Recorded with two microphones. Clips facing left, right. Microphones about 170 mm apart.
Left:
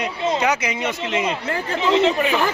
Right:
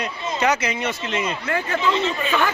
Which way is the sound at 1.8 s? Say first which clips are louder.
Left 8 dB; 80° left.